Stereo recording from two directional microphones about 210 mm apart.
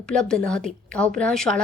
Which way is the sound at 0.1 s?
5° left (ahead or behind).